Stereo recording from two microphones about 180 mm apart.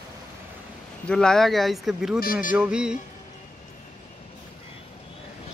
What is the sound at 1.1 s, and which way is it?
Speech, 5° left (ahead or behind).